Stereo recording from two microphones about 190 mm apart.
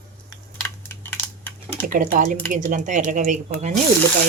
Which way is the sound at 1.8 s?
45° right (ahead or behind).